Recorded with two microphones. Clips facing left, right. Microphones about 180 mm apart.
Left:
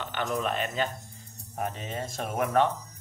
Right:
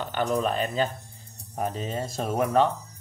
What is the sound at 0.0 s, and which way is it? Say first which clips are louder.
Speech: right 4 dB; 35° right (ahead or behind).